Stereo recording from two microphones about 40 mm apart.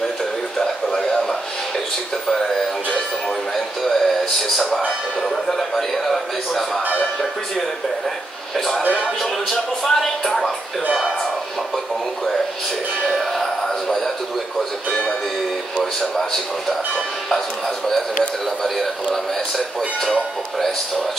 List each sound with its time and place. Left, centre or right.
3.5 s speech: centre
8.5 s speech: centre
13.8 s speech: centre
14.9 s speech: left
15.8 s speech: centre